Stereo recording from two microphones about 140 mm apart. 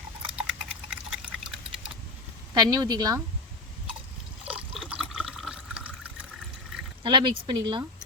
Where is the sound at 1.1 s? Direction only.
5° right (ahead or behind).